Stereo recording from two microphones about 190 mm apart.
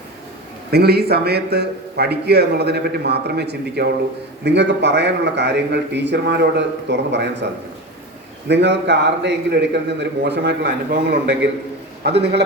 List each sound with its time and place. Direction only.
0.7 s a man's voice: 55° right (ahead or behind)
8.4 s a man's voice: 65° right (ahead or behind)